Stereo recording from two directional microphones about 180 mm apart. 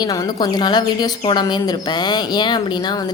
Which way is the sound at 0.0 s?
20° left (ahead or behind).